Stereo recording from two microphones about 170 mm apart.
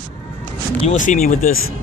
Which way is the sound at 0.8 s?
45° left (ahead or behind).